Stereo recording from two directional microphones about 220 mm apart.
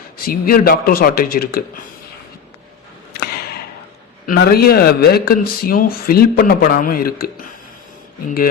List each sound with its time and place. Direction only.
0.3 s speech: 45° left (ahead or behind)
3.1 s a sound: 45° left (ahead or behind)
4.3 s speech: 45° left (ahead or behind)